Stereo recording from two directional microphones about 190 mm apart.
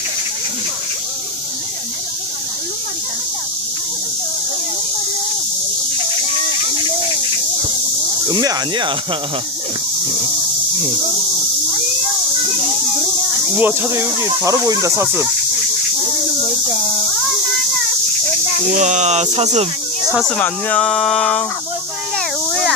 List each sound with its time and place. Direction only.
8.3 s speech: 20° right (ahead or behind)
13.6 s speech: 10° right (ahead or behind)
18.7 s speech: 40° right (ahead or behind)
20.1 s speech: 5° right (ahead or behind)
20.3 s speech: 5° left (ahead or behind)
22.4 s a sound: centre (ahead or behind)